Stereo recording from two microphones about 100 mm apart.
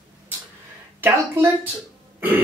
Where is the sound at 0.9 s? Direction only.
20° right (ahead or behind).